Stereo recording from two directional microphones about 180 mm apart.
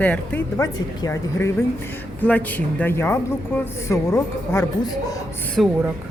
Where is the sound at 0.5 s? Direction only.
20° left (ahead or behind).